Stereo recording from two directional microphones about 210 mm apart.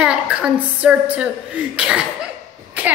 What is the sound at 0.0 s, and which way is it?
A woman's voice, 5° right (ahead or behind).